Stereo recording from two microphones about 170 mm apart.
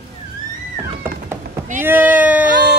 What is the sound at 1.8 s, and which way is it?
Speech, 10° right (ahead or behind).